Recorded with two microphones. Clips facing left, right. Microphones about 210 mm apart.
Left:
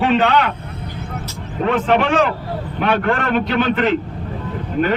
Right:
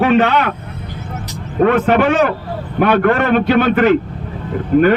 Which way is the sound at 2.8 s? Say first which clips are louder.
Right 6 dB; 55° right (ahead or behind).